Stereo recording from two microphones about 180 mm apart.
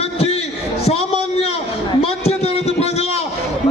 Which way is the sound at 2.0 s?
35° left (ahead or behind).